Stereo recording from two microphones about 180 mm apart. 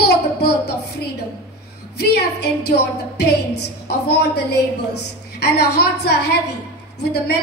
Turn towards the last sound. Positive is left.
turn(degrees=65)  # may be behind; listen again after turning